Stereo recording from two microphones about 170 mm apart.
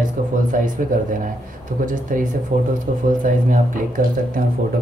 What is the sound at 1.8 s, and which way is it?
Speech, 50° right (ahead or behind).